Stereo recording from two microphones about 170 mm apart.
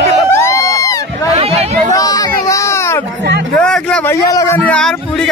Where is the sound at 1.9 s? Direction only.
20° left (ahead or behind).